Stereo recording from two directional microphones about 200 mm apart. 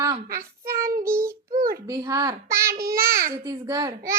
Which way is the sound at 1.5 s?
45° right (ahead or behind).